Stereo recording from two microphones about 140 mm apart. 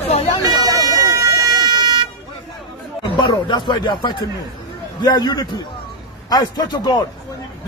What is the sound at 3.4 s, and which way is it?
A man's voice, 30° left (ahead or behind).